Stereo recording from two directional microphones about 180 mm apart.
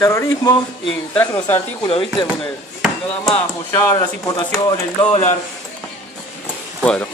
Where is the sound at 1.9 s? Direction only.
30° left (ahead or behind).